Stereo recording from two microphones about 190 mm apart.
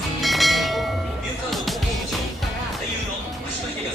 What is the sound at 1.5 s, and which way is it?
Music, centre (ahead or behind).